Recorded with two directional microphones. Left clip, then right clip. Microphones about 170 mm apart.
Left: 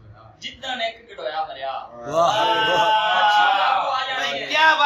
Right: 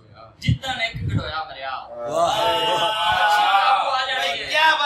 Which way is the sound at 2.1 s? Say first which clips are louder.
Left 1 dB; centre (ahead or behind).